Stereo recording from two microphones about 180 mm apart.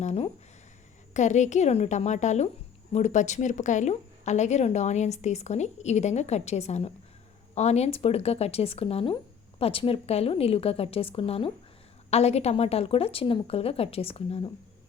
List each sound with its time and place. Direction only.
0.0 s a woman's voice: 40° left (ahead or behind)